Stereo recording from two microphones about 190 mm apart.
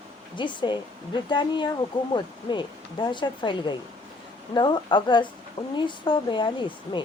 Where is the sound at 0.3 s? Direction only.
25° left (ahead or behind).